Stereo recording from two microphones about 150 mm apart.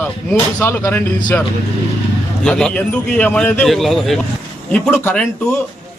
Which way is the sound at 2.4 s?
5° left (ahead or behind).